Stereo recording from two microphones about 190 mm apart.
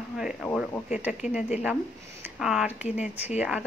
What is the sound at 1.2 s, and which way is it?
Speech, 35° left (ahead or behind).